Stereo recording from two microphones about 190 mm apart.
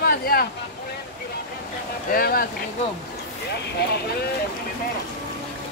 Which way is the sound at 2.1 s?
50° left (ahead or behind).